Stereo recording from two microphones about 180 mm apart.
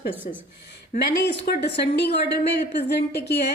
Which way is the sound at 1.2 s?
65° left (ahead or behind).